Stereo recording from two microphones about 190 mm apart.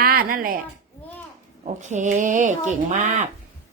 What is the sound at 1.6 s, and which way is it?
Speech, 40° right (ahead or behind).